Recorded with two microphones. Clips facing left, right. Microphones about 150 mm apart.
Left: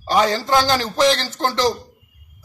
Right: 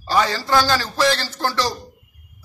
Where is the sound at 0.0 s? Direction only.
20° left (ahead or behind).